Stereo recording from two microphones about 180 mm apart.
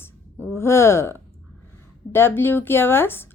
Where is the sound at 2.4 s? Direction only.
10° left (ahead or behind).